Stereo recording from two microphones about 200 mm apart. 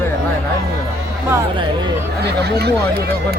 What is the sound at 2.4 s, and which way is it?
Speech, 55° right (ahead or behind).